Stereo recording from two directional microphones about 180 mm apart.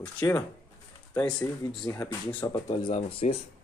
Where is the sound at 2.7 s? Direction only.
35° left (ahead or behind).